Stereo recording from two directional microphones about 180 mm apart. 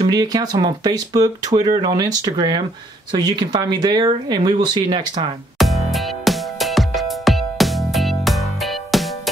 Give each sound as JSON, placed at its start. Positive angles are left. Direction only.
{"t": 0.0, "sound": "speech", "side_deg": -20}
{"t": 5.6, "sound": "music", "side_deg": 0}